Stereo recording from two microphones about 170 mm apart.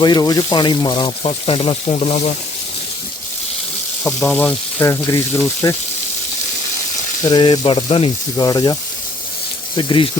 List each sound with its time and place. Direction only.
0.0 s speech: 25° left (ahead or behind)
4.0 s speech: 5° left (ahead or behind)
7.3 s speech: 25° left (ahead or behind)
8.4 s speech: 20° left (ahead or behind)